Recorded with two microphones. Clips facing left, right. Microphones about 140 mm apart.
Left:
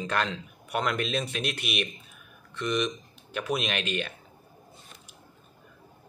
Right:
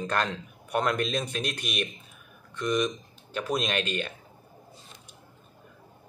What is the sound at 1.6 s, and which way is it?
Speech, 5° left (ahead or behind).